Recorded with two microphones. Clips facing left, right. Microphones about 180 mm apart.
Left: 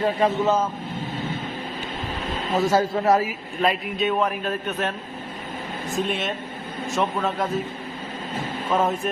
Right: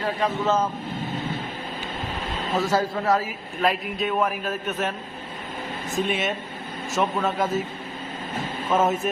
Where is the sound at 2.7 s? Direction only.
20° left (ahead or behind).